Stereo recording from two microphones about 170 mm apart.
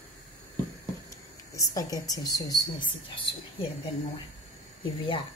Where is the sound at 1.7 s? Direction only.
20° left (ahead or behind).